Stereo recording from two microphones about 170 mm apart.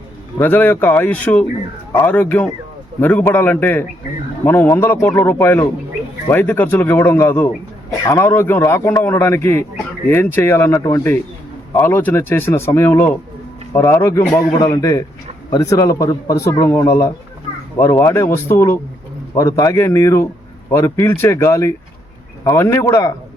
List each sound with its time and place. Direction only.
0.3 s a man's voice: 10° left (ahead or behind)